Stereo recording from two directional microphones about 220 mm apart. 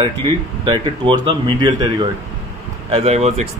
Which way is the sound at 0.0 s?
20° right (ahead or behind).